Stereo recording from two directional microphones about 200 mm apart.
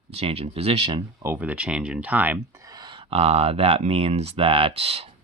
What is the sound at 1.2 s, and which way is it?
Speech, 10° right (ahead or behind).